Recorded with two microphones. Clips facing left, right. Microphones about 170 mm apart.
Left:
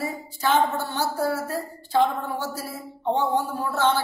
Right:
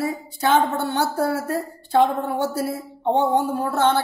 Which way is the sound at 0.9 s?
65° right (ahead or behind).